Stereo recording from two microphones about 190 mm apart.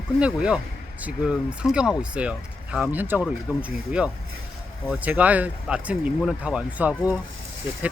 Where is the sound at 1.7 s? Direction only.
5° right (ahead or behind).